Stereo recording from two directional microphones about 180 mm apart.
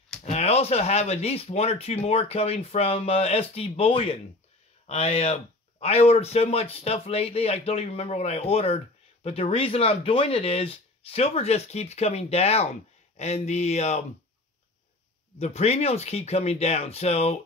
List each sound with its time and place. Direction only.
0.2 s speech: 35° left (ahead or behind)
15.3 s speech: 35° left (ahead or behind)